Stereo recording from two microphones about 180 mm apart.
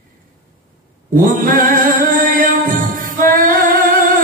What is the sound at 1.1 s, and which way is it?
Music, 50° right (ahead or behind).